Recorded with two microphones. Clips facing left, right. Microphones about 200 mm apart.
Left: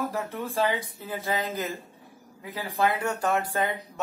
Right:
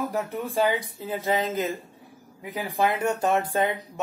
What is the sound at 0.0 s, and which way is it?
Speech, 15° right (ahead or behind).